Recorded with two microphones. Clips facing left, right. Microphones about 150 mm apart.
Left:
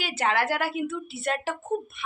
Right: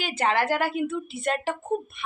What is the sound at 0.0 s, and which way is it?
A woman's voice, 5° left (ahead or behind).